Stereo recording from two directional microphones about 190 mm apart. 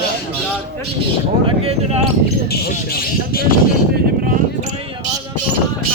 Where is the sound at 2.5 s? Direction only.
50° left (ahead or behind).